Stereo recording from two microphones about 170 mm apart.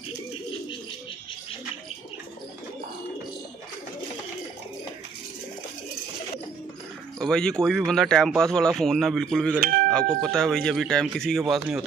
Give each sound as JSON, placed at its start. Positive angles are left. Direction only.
{"t": 7.2, "sound": "speech", "side_deg": 5}